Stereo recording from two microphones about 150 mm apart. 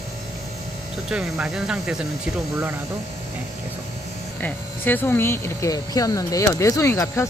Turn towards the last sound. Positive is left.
turn(degrees=20)  # may be behind; listen again after turning